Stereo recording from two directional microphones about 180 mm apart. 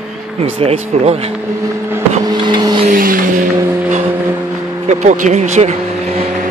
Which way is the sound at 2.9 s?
50° right (ahead or behind).